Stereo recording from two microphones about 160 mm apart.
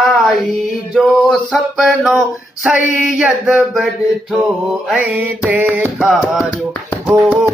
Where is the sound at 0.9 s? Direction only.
Centre (ahead or behind).